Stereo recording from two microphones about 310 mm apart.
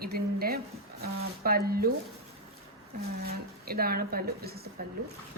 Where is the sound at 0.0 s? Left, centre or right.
Right.